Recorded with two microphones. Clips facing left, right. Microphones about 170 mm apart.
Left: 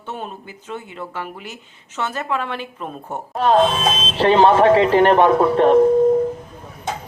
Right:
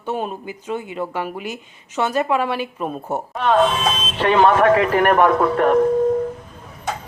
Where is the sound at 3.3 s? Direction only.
35° left (ahead or behind).